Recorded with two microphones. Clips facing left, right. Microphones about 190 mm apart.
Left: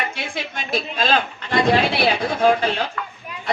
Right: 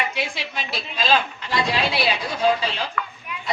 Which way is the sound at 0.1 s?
50° left (ahead or behind).